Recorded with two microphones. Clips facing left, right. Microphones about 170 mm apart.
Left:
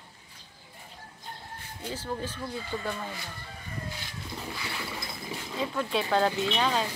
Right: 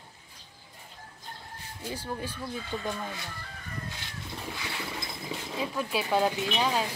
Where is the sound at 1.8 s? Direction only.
10° right (ahead or behind).